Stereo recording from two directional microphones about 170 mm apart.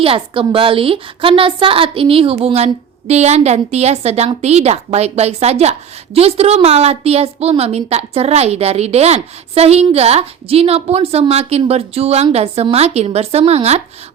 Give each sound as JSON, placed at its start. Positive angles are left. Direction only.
{"t": 0.0, "sound": "a woman's voice", "side_deg": -35}